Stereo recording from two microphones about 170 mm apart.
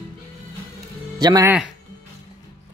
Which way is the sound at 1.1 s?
20° right (ahead or behind).